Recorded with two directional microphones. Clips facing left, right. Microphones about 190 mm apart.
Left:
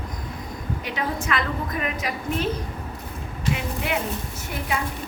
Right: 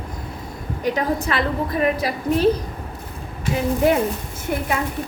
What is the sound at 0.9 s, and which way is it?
A woman's voice, 40° right (ahead or behind).